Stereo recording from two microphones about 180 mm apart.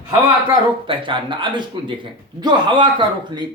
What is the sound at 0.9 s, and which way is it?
Speech, 25° right (ahead or behind).